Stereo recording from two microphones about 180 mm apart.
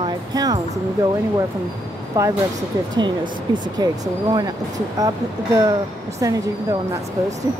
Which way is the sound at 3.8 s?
25° right (ahead or behind).